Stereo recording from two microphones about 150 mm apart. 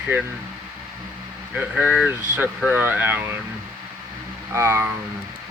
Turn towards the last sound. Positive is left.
turn(degrees=-15)  # may be behind; listen again after turning